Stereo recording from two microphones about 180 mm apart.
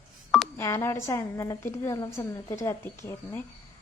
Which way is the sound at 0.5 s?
15° left (ahead or behind).